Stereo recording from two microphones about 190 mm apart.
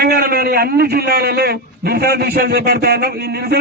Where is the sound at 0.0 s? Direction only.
55° right (ahead or behind).